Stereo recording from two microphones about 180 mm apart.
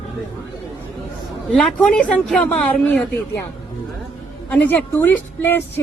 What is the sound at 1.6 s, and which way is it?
Speech, 5° left (ahead or behind).